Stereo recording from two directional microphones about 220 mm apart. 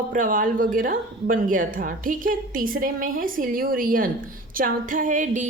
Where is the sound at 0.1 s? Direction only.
40° right (ahead or behind).